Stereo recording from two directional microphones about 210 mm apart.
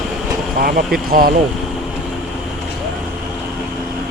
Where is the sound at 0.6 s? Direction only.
45° right (ahead or behind).